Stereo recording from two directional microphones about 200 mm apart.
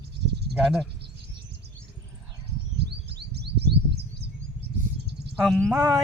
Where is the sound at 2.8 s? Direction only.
55° right (ahead or behind).